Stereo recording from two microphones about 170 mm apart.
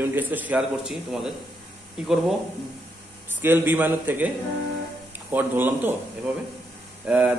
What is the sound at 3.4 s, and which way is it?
Speech, 10° right (ahead or behind).